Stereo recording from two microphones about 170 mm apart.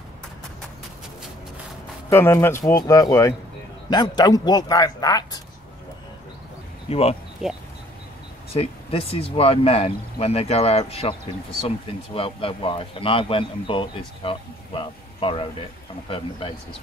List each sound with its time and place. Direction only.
2.0 s a man's voice: 15° left (ahead or behind)
6.9 s speech: 35° left (ahead or behind)
7.4 s speech: 5° right (ahead or behind)
8.5 s speech: 35° left (ahead or behind)